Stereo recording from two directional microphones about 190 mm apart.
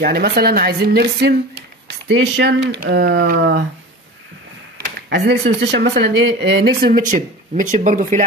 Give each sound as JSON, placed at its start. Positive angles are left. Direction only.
{"t": 0.0, "sound": "speech", "side_deg": -55}
{"t": 4.7, "sound": "a sound", "side_deg": -60}
{"t": 5.6, "sound": "speech", "side_deg": -65}